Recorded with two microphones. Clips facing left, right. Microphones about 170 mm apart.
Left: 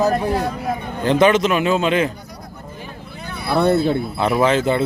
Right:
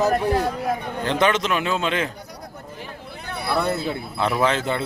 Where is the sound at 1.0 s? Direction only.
10° left (ahead or behind).